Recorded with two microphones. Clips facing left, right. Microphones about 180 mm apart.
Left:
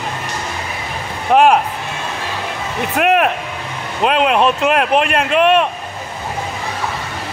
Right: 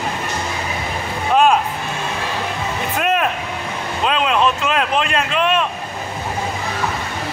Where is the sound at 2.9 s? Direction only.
60° left (ahead or behind).